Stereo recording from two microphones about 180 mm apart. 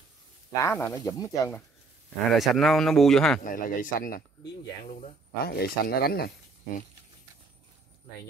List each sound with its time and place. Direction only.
0.6 s speech: 15° left (ahead or behind)
2.0 s speech: centre (ahead or behind)
3.4 s speech: 45° left (ahead or behind)
5.4 s speech: 60° left (ahead or behind)